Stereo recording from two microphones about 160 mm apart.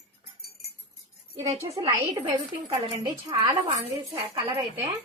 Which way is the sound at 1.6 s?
40° right (ahead or behind).